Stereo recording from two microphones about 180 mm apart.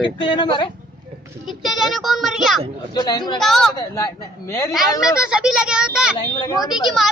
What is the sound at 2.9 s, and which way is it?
Speech, 20° left (ahead or behind).